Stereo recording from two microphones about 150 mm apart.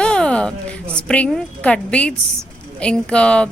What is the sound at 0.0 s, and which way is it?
A woman's voice, 5° left (ahead or behind).